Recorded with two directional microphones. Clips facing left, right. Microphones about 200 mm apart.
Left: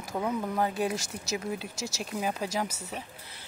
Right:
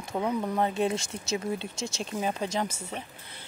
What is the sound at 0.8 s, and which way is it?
Speech, 25° right (ahead or behind).